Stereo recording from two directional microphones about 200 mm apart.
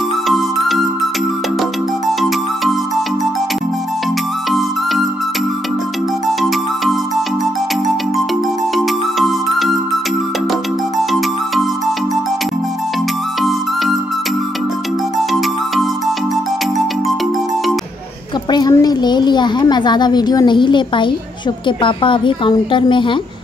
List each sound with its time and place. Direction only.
0.3 s music: centre (ahead or behind)
4.5 s music: centre (ahead or behind)
6.2 s music: centre (ahead or behind)
8.7 s music: centre (ahead or behind)
13.4 s music: centre (ahead or behind)
18.5 s a sound: 20° left (ahead or behind)
21.6 s a woman's voice: 25° left (ahead or behind)